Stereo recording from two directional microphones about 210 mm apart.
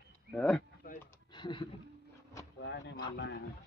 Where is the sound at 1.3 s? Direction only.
20° left (ahead or behind).